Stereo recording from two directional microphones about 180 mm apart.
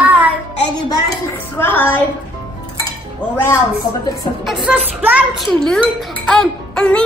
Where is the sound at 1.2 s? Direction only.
10° left (ahead or behind).